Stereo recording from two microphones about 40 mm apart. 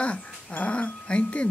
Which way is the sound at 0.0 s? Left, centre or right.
Left.